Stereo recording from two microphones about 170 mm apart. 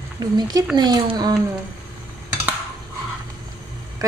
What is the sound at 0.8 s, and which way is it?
Speech, 25° right (ahead or behind).